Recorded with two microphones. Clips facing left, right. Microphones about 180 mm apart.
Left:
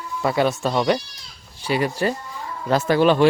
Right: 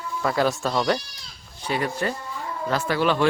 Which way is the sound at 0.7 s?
10° left (ahead or behind).